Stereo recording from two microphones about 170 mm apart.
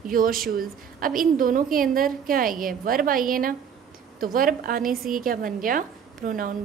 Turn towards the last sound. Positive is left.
turn(degrees=-55)  # may be behind; listen again after turning